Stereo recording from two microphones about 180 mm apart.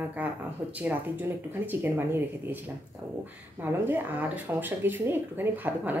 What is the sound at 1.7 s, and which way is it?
Speech, 10° right (ahead or behind).